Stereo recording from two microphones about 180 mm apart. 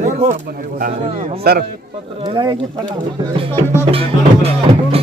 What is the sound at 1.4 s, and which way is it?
Speech, 60° right (ahead or behind).